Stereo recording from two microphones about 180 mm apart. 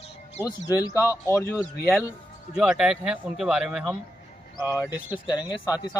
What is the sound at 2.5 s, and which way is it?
Speech, 5° right (ahead or behind).